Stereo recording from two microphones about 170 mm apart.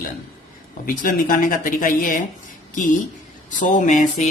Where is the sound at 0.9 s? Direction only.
55° left (ahead or behind).